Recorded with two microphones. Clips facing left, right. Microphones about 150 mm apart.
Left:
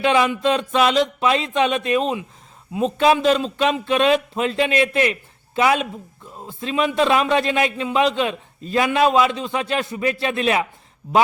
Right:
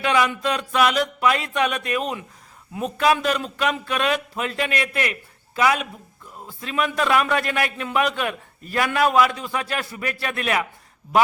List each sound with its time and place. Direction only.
0.0 s a man's voice: 25° left (ahead or behind)